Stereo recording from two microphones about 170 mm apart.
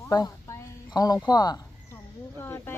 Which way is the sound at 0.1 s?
25° left (ahead or behind).